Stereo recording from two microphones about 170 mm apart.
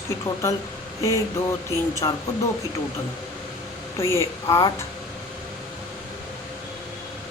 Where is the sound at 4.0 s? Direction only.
15° left (ahead or behind).